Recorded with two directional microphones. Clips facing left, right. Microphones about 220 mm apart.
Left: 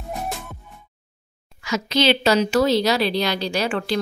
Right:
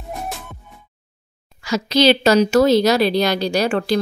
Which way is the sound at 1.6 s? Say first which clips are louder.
Right 5 dB; 35° right (ahead or behind).